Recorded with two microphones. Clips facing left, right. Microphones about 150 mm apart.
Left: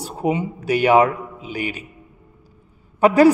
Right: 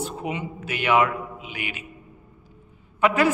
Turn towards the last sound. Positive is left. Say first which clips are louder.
# left 8 dB
turn(degrees=35)  # may be behind; listen again after turning